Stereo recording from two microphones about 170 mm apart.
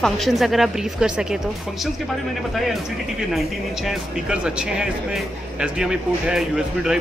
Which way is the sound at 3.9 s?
5° right (ahead or behind).